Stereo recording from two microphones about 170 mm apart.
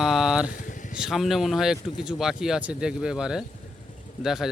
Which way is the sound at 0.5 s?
50° left (ahead or behind).